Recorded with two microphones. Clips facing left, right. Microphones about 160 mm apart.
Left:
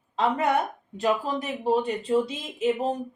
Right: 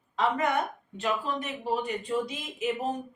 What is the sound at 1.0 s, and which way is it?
Speech, 35° left (ahead or behind).